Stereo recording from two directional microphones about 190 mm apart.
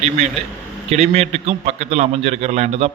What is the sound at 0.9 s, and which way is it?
A man's voice, 35° right (ahead or behind).